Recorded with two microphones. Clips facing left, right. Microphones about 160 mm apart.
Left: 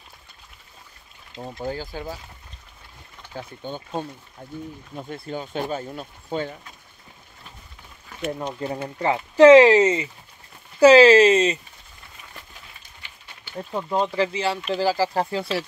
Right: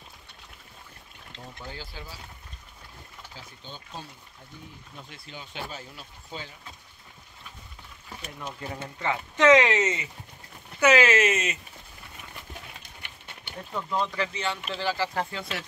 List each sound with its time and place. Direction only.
1.4 s speech: 45° left (ahead or behind)
3.3 s speech: 55° left (ahead or behind)
8.3 s speech: 40° left (ahead or behind)
13.6 s speech: 35° left (ahead or behind)